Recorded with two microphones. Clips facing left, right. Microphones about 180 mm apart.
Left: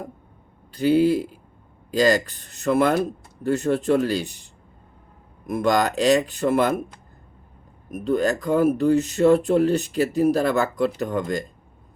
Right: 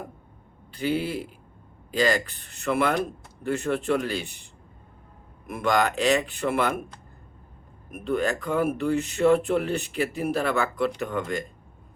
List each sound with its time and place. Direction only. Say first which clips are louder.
0.7 s speech: left 9 dB; 40° left (ahead or behind)
5.5 s speech: left 3 dB; 40° left (ahead or behind)
7.9 s speech: left 4 dB; 40° left (ahead or behind)